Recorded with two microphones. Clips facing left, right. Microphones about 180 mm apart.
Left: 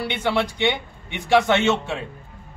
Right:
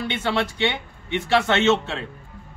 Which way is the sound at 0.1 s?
15° left (ahead or behind).